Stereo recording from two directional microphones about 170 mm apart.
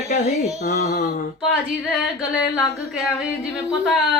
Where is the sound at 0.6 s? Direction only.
45° left (ahead or behind).